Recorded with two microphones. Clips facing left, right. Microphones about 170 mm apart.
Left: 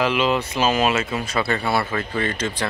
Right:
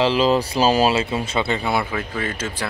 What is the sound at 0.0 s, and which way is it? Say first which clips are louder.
Speech: right 3 dB; 35° right (ahead or behind).